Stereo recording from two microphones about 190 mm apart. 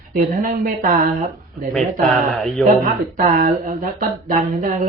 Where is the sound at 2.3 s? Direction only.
Centre (ahead or behind).